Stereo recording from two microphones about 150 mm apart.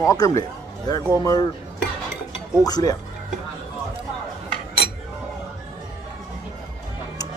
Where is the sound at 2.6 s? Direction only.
25° left (ahead or behind).